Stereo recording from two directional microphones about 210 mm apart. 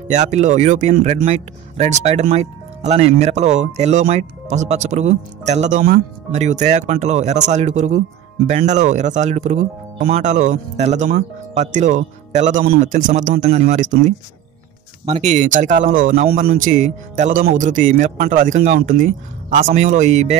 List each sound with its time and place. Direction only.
0.1 s speech: 35° right (ahead or behind)